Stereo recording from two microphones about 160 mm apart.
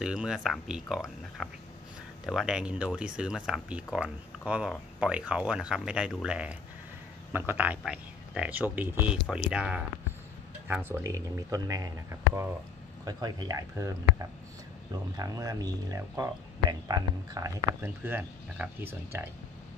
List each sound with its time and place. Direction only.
0.0 s speech: 5° right (ahead or behind)